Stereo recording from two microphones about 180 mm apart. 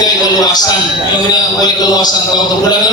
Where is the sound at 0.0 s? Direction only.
20° left (ahead or behind).